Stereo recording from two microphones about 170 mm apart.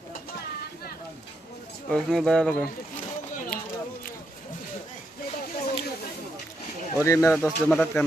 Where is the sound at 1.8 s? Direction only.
5° left (ahead or behind).